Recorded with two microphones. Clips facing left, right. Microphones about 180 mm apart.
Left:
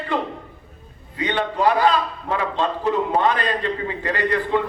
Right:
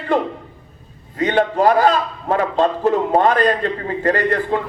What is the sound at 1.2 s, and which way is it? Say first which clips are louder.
A man's voice: right 6 dB; 45° right (ahead or behind).